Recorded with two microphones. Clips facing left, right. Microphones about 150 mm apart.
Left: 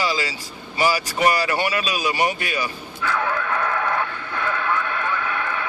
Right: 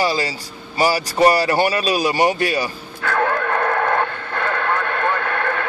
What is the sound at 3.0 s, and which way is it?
Radio, 55° right (ahead or behind).